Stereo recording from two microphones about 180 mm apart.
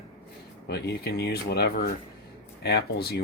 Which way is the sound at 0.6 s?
65° left (ahead or behind).